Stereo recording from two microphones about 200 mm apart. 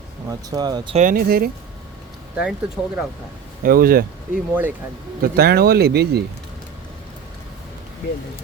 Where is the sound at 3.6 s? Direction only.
45° right (ahead or behind).